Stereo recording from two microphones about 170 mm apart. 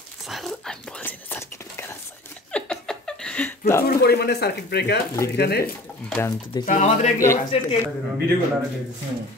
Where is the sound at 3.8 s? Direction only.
70° left (ahead or behind).